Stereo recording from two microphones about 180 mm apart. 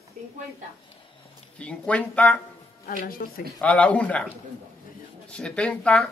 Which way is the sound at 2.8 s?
50° left (ahead or behind).